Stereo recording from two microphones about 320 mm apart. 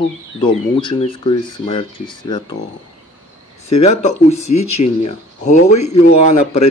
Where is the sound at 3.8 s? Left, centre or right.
Left.